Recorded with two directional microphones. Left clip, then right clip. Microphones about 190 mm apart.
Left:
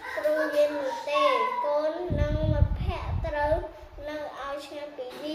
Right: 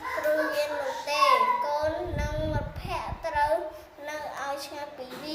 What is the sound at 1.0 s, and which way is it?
Child singing, centre (ahead or behind).